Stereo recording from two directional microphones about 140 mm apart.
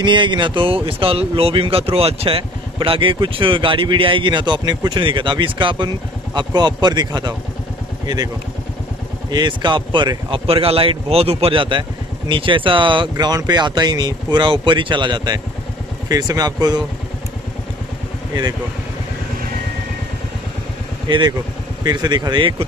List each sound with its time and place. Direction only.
0.0 s speech: 35° right (ahead or behind)
9.3 s speech: 35° right (ahead or behind)
21.1 s speech: 35° right (ahead or behind)